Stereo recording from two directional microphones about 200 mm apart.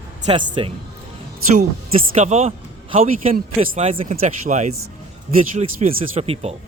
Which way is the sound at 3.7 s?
30° right (ahead or behind).